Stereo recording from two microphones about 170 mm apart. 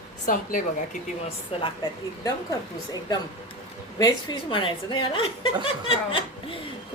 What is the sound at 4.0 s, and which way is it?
A woman's voice, 25° left (ahead or behind).